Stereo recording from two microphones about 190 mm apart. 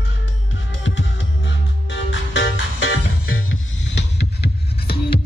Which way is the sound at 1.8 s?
75° left (ahead or behind).